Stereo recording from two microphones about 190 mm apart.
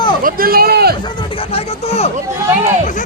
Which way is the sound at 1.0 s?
25° left (ahead or behind).